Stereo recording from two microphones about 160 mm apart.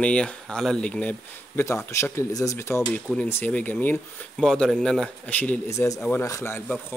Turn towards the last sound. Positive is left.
turn(degrees=20)  # may be behind; listen again after turning